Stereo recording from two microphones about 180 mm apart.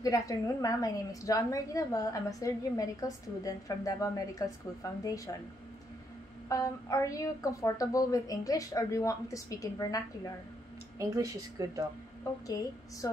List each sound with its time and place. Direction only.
0.0 s a woman's voice: 20° left (ahead or behind)
6.5 s a woman's voice: 20° left (ahead or behind)
11.0 s speech: 20° right (ahead or behind)
12.4 s a woman's voice: 20° left (ahead or behind)